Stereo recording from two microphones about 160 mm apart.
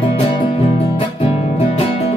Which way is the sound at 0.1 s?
40° left (ahead or behind).